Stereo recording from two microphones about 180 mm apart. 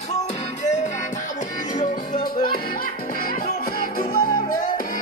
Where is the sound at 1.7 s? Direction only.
45° left (ahead or behind).